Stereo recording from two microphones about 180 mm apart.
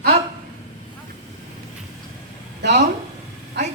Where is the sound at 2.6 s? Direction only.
70° right (ahead or behind).